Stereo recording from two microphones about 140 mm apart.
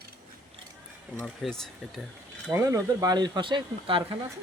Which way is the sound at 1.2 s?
Centre (ahead or behind).